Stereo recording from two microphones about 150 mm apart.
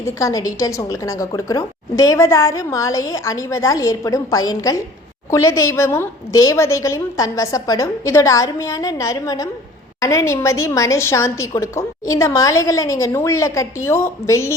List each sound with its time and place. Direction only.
0.0 s a woman's voice: 20° left (ahead or behind)